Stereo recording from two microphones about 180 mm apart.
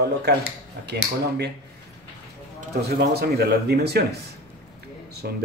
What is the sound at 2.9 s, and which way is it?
Speech, 60° right (ahead or behind).